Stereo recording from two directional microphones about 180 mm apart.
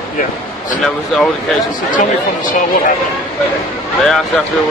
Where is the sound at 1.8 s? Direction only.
50° left (ahead or behind).